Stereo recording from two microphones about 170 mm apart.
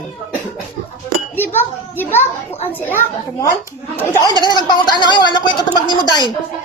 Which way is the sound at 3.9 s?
15° left (ahead or behind).